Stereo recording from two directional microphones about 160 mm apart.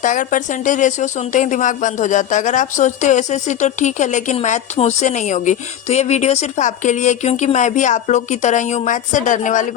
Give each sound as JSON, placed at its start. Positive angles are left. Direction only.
{"t": 0.0, "sound": "a woman's voice", "side_deg": 55}